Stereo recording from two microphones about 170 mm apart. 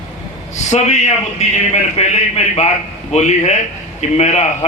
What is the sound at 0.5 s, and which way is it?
A man's voice, 40° left (ahead or behind).